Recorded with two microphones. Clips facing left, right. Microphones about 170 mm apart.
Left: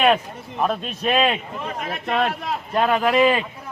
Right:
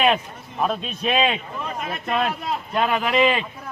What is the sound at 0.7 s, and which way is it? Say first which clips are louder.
Speech: left 1 dB; centre (ahead or behind).